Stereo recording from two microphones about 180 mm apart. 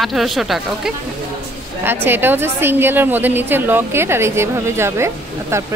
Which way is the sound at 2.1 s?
10° right (ahead or behind).